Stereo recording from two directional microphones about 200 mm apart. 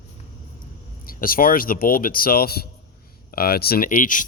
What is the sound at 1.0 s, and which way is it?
Speech, 45° left (ahead or behind).